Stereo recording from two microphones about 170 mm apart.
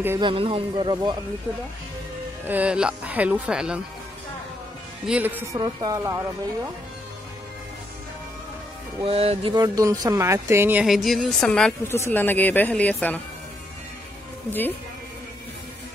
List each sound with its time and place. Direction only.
0.2 s speech: 30° right (ahead or behind)
2.4 s a woman's voice: 10° right (ahead or behind)
5.0 s a woman's voice: 10° right (ahead or behind)
5.6 s speech: 25° right (ahead or behind)
9.0 s speech: 35° right (ahead or behind)
9.5 s a woman's voice: 20° right (ahead or behind); by 13.2 s 10° left (ahead or behind)